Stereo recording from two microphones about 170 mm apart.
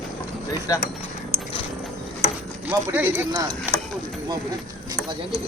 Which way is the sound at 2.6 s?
10° right (ahead or behind).